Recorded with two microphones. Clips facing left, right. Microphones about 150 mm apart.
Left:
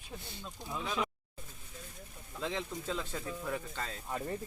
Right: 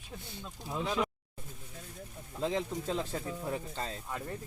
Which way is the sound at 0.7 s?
30° right (ahead or behind).